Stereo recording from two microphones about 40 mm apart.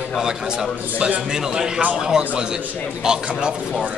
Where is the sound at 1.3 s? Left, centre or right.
Centre.